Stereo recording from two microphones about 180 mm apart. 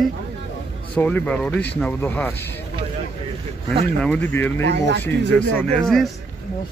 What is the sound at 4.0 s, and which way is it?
Speech, 10° left (ahead or behind).